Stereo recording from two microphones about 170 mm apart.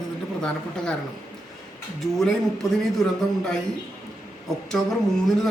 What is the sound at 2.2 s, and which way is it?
Speech, centre (ahead or behind).